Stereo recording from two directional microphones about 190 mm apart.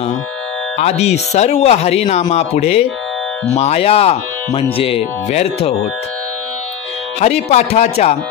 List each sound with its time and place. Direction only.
0.7 s speech: 35° left (ahead or behind)
7.2 s speech: 35° left (ahead or behind)